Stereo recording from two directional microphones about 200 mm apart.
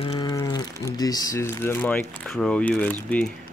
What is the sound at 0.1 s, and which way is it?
Speech, 20° left (ahead or behind).